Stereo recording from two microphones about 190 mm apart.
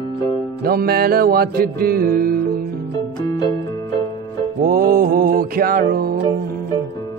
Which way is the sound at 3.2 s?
20° left (ahead or behind).